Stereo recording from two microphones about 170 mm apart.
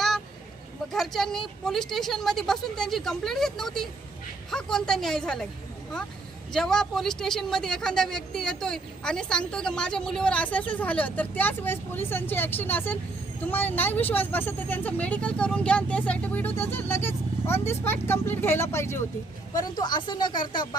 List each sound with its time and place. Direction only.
0.9 s speech: centre (ahead or behind)
6.5 s speech: 5° left (ahead or behind); by 20.7 s 25° left (ahead or behind)